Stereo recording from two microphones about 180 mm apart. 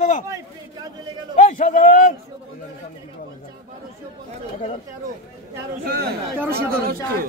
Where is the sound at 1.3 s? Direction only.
40° left (ahead or behind).